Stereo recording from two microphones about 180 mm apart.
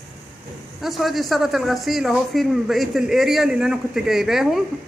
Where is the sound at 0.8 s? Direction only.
Centre (ahead or behind).